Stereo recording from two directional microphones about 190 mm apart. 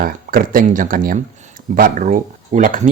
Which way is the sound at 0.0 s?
50° right (ahead or behind).